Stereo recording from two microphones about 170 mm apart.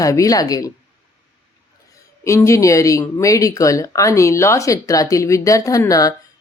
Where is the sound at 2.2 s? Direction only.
15° left (ahead or behind).